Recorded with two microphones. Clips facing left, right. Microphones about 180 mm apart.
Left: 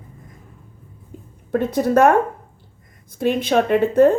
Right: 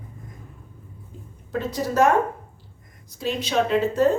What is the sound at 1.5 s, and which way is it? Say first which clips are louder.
Speech: left 6 dB; 55° left (ahead or behind).